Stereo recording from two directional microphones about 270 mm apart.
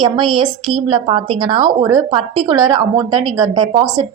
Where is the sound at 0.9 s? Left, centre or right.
Centre.